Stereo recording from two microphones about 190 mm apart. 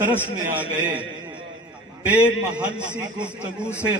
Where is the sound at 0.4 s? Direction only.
10° right (ahead or behind).